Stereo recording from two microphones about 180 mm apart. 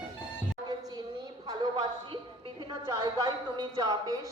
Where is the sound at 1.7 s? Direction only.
35° right (ahead or behind).